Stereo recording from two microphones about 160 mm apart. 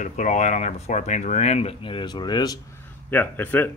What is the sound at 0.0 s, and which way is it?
Speech, 50° left (ahead or behind).